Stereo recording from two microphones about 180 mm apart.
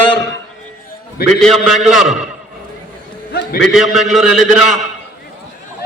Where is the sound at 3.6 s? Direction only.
Centre (ahead or behind).